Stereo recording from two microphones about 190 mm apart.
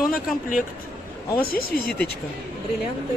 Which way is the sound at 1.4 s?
55° left (ahead or behind).